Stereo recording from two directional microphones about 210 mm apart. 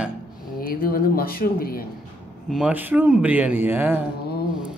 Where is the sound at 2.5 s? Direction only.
5° right (ahead or behind).